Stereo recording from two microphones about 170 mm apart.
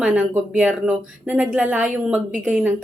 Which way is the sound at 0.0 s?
10° right (ahead or behind).